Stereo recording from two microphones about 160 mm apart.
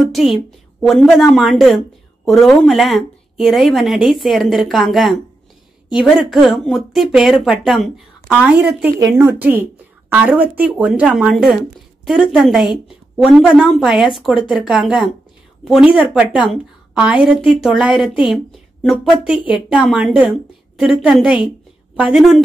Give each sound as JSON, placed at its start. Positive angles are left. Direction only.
{"t": 0.1, "sound": "a woman's voice", "side_deg": 0}